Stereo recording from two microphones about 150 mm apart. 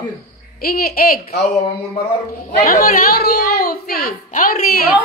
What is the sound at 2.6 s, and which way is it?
A woman's voice, 75° left (ahead or behind).